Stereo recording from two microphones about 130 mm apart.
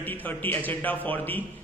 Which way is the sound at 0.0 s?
15° left (ahead or behind).